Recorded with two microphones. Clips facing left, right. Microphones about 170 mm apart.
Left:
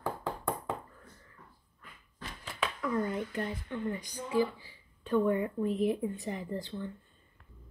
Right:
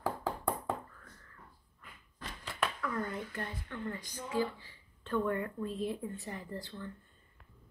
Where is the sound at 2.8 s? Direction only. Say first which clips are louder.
Left 5 dB; 20° left (ahead or behind).